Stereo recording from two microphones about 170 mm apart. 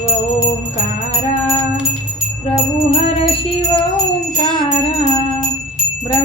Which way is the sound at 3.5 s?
30° left (ahead or behind).